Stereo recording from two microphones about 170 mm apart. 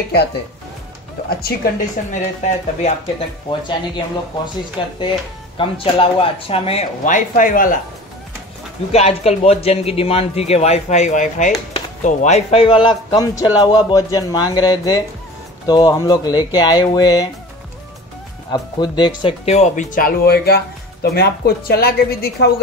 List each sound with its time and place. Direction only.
1.4 s speech: 55° left (ahead or behind)
3.4 s speech: 30° left (ahead or behind); by 7.8 s 55° left (ahead or behind)
8.9 s speech: 35° left (ahead or behind); by 17.3 s 20° left (ahead or behind)
18.5 s speech: 25° left (ahead or behind); by 22.5 s 65° left (ahead or behind)